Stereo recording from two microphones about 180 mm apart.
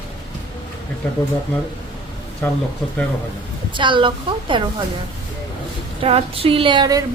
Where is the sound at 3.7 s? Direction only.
25° right (ahead or behind).